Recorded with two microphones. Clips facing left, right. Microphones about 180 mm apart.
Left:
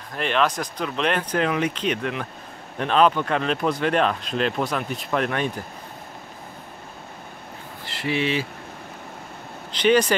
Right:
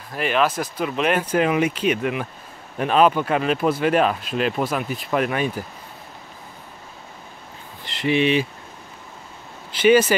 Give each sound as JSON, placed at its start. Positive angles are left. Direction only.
{"t": 0.1, "sound": "speech", "side_deg": -5}
{"t": 7.8, "sound": "speech", "side_deg": -20}
{"t": 9.7, "sound": "speech", "side_deg": -5}